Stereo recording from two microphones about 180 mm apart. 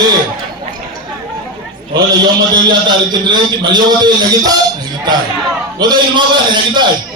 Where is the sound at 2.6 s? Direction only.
25° right (ahead or behind).